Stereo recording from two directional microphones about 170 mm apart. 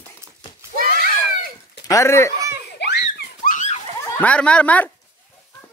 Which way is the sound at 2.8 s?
75° left (ahead or behind).